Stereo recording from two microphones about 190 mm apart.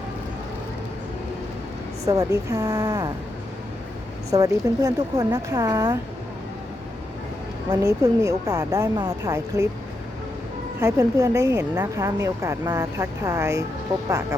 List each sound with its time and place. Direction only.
2.0 s speech: 15° right (ahead or behind)
4.3 s speech: 20° right (ahead or behind)
7.7 s speech: 15° right (ahead or behind)
10.8 s speech: 15° right (ahead or behind)